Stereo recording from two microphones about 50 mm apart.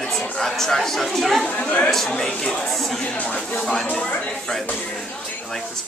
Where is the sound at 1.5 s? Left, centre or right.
Left; by 3.0 s centre.